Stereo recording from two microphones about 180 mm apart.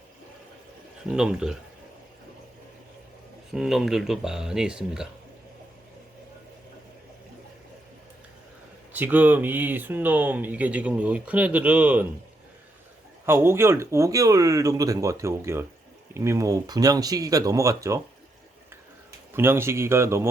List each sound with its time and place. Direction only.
1.1 s speech: 5° right (ahead or behind)
3.5 s speech: centre (ahead or behind)
8.9 s speech: 10° right (ahead or behind)
13.2 s speech: 15° right (ahead or behind)
19.3 s speech: 15° right (ahead or behind)